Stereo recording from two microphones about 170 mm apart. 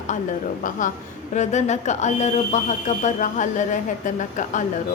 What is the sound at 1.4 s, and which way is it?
A woman's voice, 45° left (ahead or behind).